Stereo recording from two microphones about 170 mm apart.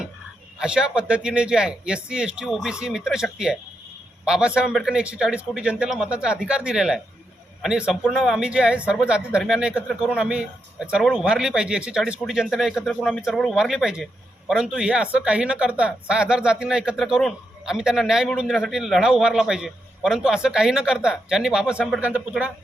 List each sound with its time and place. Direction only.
0.6 s speech: 5° right (ahead or behind)